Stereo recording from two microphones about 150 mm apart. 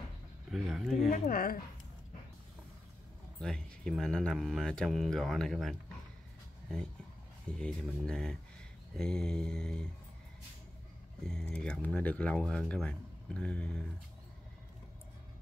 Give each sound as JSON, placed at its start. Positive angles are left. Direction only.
{"t": 0.5, "sound": "speech", "side_deg": 0}
{"t": 1.1, "sound": "a woman's voice", "side_deg": 70}
{"t": 3.3, "sound": "speech", "side_deg": 5}
{"t": 7.4, "sound": "speech", "side_deg": 5}
{"t": 11.2, "sound": "speech", "side_deg": 5}